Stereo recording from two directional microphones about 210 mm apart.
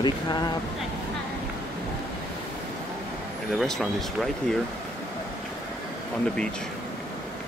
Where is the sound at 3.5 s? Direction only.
Centre (ahead or behind).